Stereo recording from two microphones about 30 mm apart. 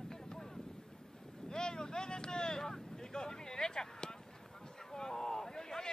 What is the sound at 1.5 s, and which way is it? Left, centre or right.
Wind noise, left.